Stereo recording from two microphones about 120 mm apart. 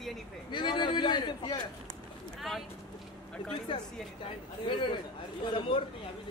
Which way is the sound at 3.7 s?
45° left (ahead or behind).